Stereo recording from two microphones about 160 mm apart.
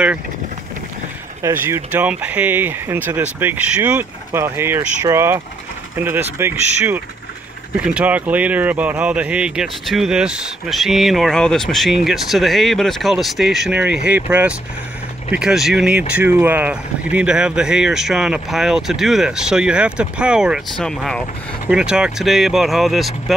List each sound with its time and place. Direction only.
1.4 s speech: 15° right (ahead or behind)